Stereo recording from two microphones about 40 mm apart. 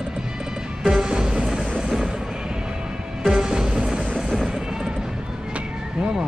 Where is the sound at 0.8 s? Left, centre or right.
Centre.